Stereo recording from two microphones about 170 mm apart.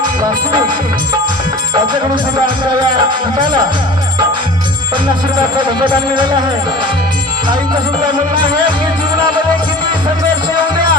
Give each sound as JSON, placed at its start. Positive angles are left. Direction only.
{"t": 2.9, "sound": "music", "side_deg": -25}
{"t": 5.5, "sound": "music", "side_deg": -25}